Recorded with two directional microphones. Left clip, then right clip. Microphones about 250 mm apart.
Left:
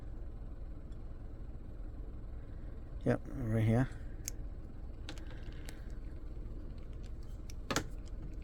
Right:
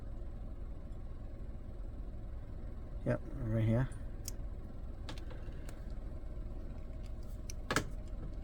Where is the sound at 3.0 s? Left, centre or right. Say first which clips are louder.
Left 3 dB; left.